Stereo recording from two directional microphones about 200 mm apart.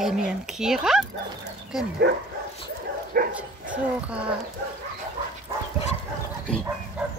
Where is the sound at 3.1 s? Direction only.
45° right (ahead or behind).